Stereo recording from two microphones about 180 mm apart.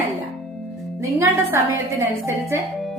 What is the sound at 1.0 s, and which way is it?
Speech, 15° right (ahead or behind).